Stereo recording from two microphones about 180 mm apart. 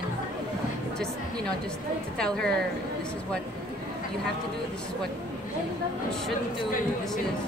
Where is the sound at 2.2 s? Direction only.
5° left (ahead or behind).